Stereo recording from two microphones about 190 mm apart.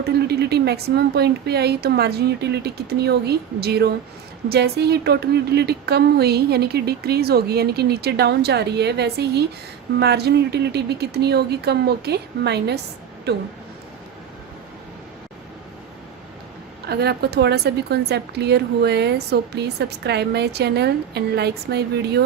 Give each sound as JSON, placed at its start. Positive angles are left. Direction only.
{"t": 0.0, "sound": "a woman's voice", "side_deg": -60}
{"t": 16.8, "sound": "a woman's voice", "side_deg": -55}